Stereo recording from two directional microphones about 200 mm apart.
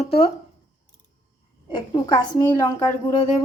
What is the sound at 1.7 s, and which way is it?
A woman's voice, 20° left (ahead or behind).